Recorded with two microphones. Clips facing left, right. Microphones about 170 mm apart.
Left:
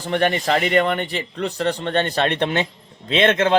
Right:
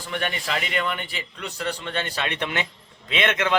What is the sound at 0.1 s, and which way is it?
A man's voice, 40° left (ahead or behind).